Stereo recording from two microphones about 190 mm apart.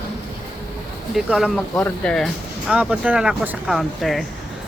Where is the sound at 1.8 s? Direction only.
5° left (ahead or behind).